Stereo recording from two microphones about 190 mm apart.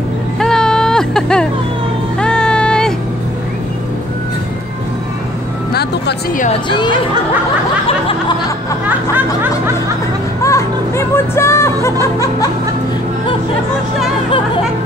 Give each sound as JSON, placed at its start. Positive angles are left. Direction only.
{"t": 0.4, "sound": "music", "side_deg": 5}
{"t": 5.7, "sound": "music", "side_deg": 60}
{"t": 8.8, "sound": "music", "side_deg": -10}
{"t": 10.4, "sound": "music", "side_deg": 15}